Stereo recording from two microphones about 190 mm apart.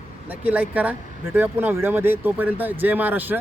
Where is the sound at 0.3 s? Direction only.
10° right (ahead or behind).